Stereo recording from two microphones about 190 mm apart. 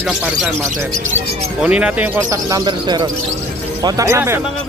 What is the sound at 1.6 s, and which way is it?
Speech, 5° right (ahead or behind).